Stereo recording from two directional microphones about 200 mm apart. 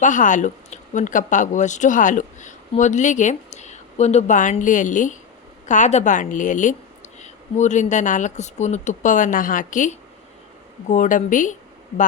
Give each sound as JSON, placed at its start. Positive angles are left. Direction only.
{"t": 0.0, "sound": "speech", "side_deg": 40}